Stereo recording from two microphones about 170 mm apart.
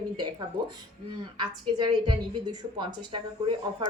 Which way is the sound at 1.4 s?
25° right (ahead or behind).